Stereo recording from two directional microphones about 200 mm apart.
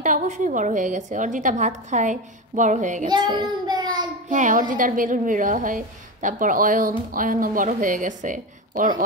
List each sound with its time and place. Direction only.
0.0 s a woman's voice: 40° right (ahead or behind)
3.1 s child singing: 20° right (ahead or behind)
4.3 s a woman's voice: 40° right (ahead or behind)